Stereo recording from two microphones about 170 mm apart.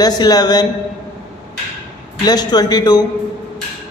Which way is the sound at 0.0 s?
25° left (ahead or behind).